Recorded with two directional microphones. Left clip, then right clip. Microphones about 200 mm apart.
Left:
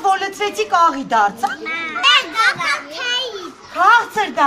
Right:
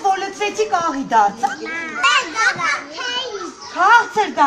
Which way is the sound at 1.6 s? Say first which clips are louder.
Left 3 dB; 15° right (ahead or behind).